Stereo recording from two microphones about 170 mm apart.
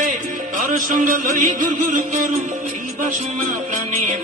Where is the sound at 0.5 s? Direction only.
50° right (ahead or behind).